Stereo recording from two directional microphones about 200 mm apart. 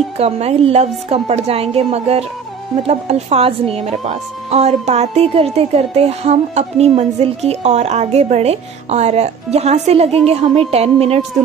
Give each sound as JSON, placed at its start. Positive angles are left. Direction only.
{"t": 0.2, "sound": "a woman's voice", "side_deg": -30}